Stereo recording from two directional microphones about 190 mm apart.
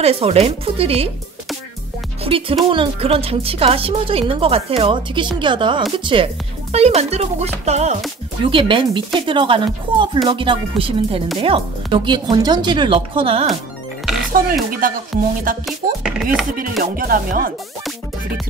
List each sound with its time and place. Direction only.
0.0 s speech: 30° right (ahead or behind)
2.2 s speech: 30° right (ahead or behind)
14.3 s speech: 45° right (ahead or behind)
15.6 s speech: centre (ahead or behind)
16.8 s speech: 50° right (ahead or behind)